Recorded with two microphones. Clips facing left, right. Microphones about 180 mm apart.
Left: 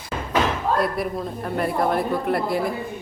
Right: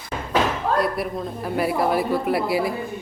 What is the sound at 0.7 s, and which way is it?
Speech, centre (ahead or behind).